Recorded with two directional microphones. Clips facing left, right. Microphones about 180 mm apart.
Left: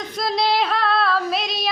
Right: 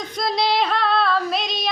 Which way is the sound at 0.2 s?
Centre (ahead or behind).